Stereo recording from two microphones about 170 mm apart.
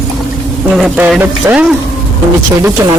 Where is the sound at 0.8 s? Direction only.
5° right (ahead or behind).